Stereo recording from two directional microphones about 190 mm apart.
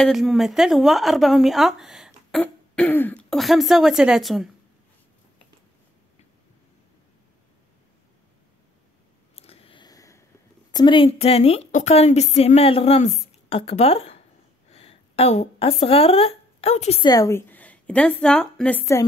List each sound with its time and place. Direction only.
0.0 s speech: centre (ahead or behind)
9.3 s a sound: 30° left (ahead or behind)
10.7 s a woman's voice: 25° left (ahead or behind)
17.0 s a woman's voice: 20° left (ahead or behind)